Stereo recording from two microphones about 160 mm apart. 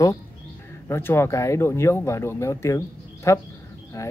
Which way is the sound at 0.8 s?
15° left (ahead or behind).